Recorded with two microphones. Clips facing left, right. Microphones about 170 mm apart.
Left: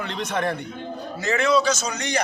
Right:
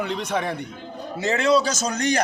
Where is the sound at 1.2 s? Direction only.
30° right (ahead or behind); by 2.2 s 50° right (ahead or behind).